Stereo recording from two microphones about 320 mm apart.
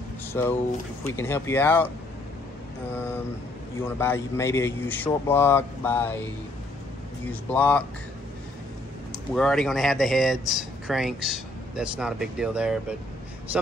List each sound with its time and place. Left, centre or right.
0.3 s speech: centre
2.9 s speech: centre
7.4 s speech: centre
9.3 s speech: centre